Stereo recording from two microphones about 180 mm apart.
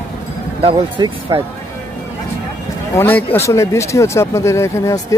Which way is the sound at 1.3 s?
20° right (ahead or behind).